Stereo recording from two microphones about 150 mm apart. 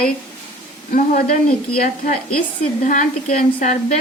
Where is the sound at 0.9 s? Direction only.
65° left (ahead or behind).